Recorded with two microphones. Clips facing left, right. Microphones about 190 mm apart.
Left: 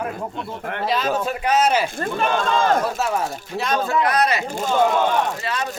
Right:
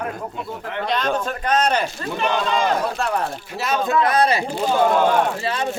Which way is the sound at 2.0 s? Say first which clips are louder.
Left 1 dB; 50° left (ahead or behind).